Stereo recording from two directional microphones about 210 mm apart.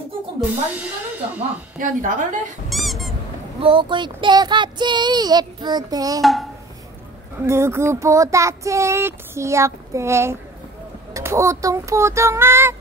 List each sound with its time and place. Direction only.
0.7 s speech: 5° right (ahead or behind)
1.8 s a woman's voice: 40° right (ahead or behind)
2.7 s squeak: centre (ahead or behind)
3.6 s speech: 25° right (ahead or behind)
7.4 s child singing: 10° right (ahead or behind)